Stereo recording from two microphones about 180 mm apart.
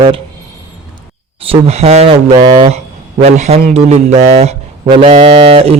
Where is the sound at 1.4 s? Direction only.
35° right (ahead or behind).